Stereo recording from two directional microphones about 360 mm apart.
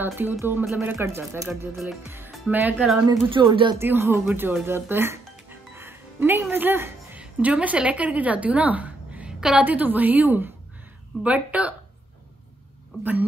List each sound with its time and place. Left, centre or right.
0.0 s speech: centre